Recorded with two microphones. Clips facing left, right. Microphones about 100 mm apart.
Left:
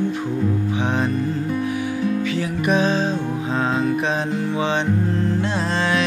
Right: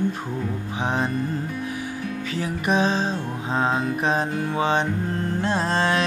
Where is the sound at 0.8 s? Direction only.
35° right (ahead or behind).